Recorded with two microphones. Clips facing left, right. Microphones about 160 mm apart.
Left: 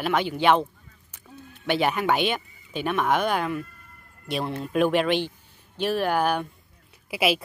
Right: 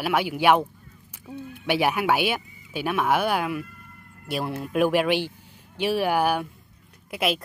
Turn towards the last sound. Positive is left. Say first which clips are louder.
# left 2 dB
turn(degrees=5)  # may be behind; listen again after turning